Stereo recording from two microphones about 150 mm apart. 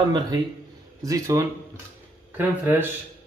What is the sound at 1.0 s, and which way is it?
Speech, 20° right (ahead or behind).